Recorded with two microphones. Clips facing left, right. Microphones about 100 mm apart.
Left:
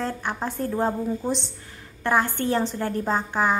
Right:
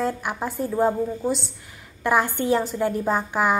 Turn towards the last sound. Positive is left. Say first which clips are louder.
# right 1 dB
turn(degrees=-15)  # may be behind; listen again after turning